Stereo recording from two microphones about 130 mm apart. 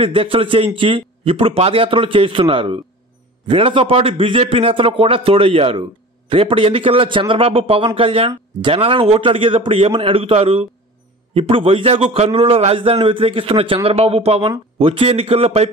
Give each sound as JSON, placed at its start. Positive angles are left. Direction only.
{"t": 0.0, "sound": "a man's voice", "side_deg": -45}